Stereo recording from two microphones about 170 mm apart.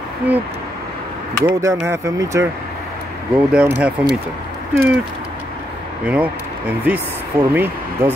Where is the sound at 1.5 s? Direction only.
15° right (ahead or behind).